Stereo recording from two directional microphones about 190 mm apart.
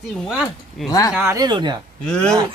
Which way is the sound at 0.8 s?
20° left (ahead or behind).